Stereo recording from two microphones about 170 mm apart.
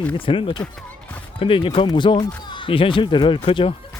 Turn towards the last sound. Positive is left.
turn(degrees=35)  # may be behind; listen again after turning